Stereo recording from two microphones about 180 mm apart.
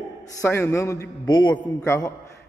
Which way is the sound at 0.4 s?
15° left (ahead or behind).